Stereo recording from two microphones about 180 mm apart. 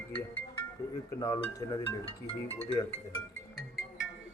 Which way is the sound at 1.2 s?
15° left (ahead or behind).